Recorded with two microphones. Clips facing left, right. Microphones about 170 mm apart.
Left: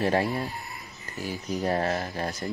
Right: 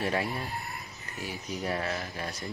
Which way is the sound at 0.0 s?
40° left (ahead or behind).